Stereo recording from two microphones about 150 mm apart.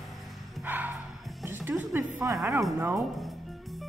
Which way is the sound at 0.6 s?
10° right (ahead or behind).